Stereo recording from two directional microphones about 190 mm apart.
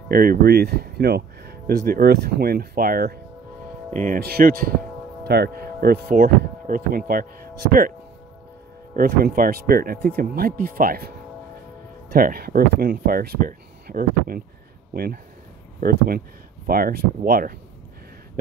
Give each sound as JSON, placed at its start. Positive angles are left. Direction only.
{"t": 0.1, "sound": "speech", "side_deg": -50}
{"t": 8.9, "sound": "speech", "side_deg": -50}
{"t": 15.8, "sound": "speech", "side_deg": -50}